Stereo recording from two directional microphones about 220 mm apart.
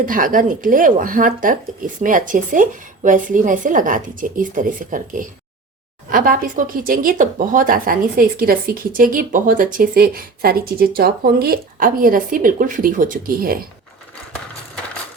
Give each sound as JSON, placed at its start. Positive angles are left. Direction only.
{"t": 0.0, "sound": "speech", "side_deg": -40}